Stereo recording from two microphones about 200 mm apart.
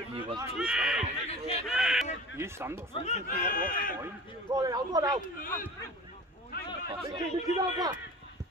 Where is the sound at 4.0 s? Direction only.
20° right (ahead or behind).